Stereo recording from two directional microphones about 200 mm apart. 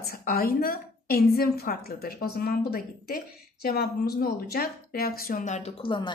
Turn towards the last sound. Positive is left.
turn(degrees=25)  # may be behind; listen again after turning